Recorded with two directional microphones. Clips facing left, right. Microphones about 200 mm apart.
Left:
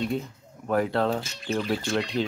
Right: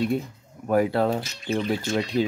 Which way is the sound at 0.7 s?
10° right (ahead or behind).